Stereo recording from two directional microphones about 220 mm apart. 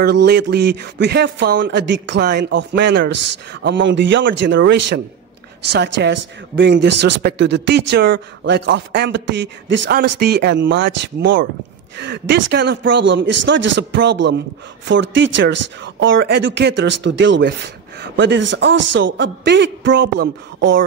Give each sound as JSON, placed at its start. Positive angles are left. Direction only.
{"t": 0.0, "sound": "a man's voice", "side_deg": -50}
{"t": 18.8, "sound": "speech", "side_deg": -75}